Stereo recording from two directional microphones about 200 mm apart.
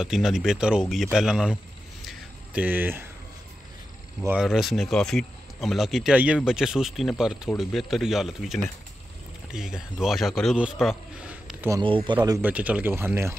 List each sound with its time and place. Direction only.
0.0 s speech: centre (ahead or behind)
2.0 s a sound: 5° right (ahead or behind)
4.2 s speech: 5° right (ahead or behind)
11.8 s speech: 25° right (ahead or behind)
12.2 s speech: 10° right (ahead or behind)